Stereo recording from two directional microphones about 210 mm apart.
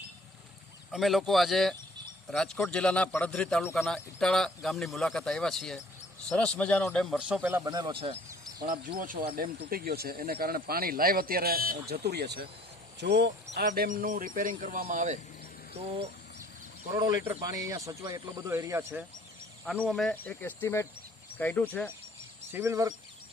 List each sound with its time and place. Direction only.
0.9 s speech: centre (ahead or behind); by 8.2 s 25° right (ahead or behind)
8.6 s speech: 40° right (ahead or behind)
16.9 s a man's voice: 15° right (ahead or behind)
19.8 s speech: 5° left (ahead or behind)
22.5 s a man's voice: 15° right (ahead or behind)